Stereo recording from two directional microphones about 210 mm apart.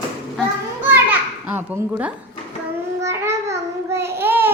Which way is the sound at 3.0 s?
15° right (ahead or behind).